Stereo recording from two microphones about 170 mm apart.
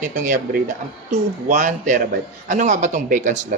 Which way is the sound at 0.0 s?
50° right (ahead or behind).